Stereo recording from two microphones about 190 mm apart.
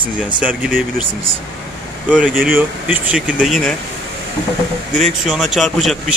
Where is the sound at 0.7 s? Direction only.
50° right (ahead or behind).